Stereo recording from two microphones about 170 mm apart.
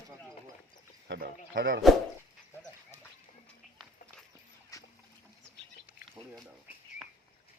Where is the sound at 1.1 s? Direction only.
85° right.